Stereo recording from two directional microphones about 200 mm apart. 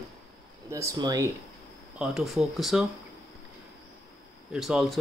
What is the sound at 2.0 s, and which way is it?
Speech, 5° right (ahead or behind).